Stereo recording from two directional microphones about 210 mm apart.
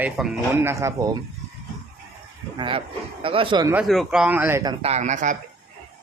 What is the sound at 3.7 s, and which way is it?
Speech, centre (ahead or behind).